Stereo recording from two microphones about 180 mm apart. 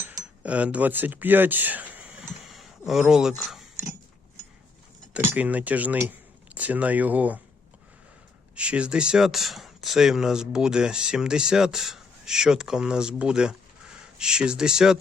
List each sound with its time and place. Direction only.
0.0 s cutlery: 20° right (ahead or behind)
0.4 s speech: 5° right (ahead or behind)
5.1 s speech: 10° right (ahead or behind)
8.5 s speech: 5° right (ahead or behind)